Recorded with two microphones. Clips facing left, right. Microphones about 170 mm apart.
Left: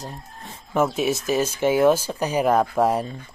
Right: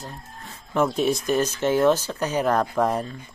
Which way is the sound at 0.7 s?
5° left (ahead or behind).